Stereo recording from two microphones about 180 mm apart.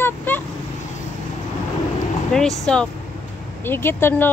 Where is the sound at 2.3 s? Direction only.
5° left (ahead or behind).